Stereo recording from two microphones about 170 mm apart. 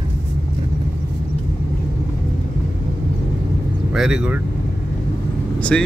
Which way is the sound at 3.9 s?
5° right (ahead or behind).